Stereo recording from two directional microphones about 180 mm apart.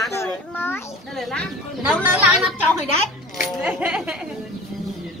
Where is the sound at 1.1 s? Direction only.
Centre (ahead or behind).